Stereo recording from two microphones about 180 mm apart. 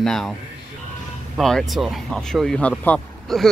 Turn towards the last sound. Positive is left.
turn(degrees=0)  # may be behind; listen again after turning